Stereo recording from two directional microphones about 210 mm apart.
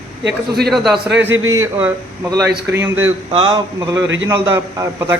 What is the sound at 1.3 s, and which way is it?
Speech, 75° right (ahead or behind).